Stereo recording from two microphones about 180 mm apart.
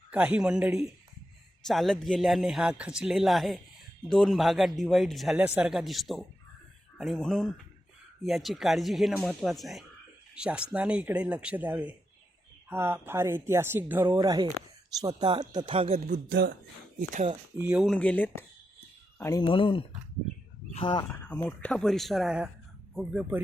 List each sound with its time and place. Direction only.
0.1 s speech: 5° right (ahead or behind); by 17.3 s 40° right (ahead or behind)
17.6 s speech: 5° right (ahead or behind)
17.9 s speech: 10° left (ahead or behind)
19.2 s speech: 20° left (ahead or behind)
21.0 s speech: 5° left (ahead or behind)